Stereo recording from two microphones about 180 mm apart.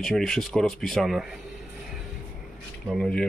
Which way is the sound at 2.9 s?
Centre (ahead or behind).